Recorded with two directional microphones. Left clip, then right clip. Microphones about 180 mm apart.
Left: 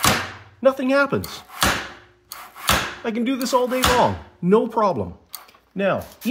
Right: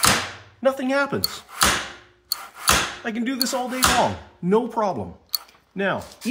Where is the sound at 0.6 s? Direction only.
35° left (ahead or behind).